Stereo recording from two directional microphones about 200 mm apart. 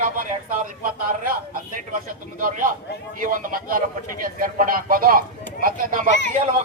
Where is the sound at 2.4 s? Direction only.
40° right (ahead or behind).